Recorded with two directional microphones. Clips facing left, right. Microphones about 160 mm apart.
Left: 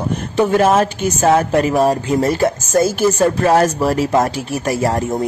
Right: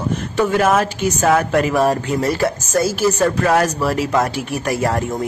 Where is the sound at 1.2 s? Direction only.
25° left (ahead or behind).